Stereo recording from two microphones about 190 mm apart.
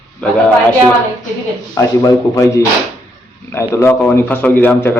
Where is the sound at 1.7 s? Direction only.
20° left (ahead or behind).